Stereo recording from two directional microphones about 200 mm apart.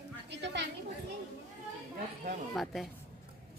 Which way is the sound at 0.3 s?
60° right (ahead or behind).